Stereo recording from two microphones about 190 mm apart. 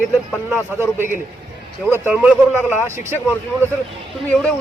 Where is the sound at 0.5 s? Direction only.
10° right (ahead or behind).